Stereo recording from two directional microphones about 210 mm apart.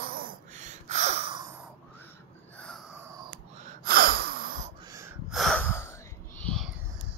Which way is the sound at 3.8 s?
45° right (ahead or behind).